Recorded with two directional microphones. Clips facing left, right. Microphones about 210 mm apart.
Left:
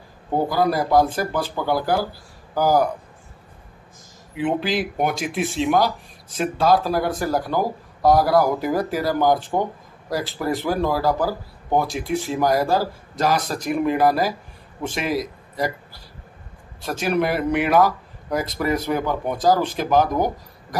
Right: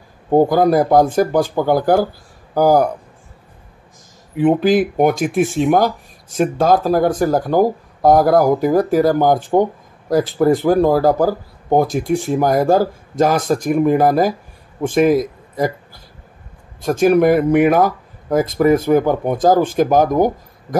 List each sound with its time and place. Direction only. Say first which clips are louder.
0.3 s speech: right 8 dB; 50° right (ahead or behind)
4.4 s speech: right 9 dB; 50° right (ahead or behind)